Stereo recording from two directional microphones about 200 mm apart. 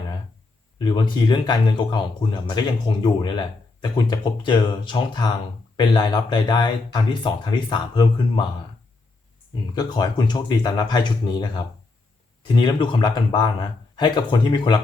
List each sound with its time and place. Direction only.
0.8 s speech: 20° left (ahead or behind)
9.7 s speech: 20° left (ahead or behind)